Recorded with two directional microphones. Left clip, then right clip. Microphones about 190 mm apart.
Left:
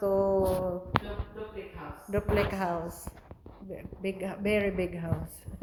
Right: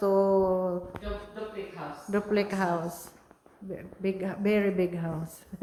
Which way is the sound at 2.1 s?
10° right (ahead or behind).